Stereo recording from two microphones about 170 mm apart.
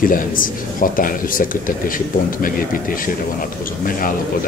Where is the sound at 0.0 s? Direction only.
55° left (ahead or behind).